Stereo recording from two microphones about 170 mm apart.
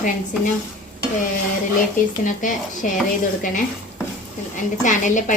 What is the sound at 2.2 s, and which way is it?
Speech, 50° left (ahead or behind).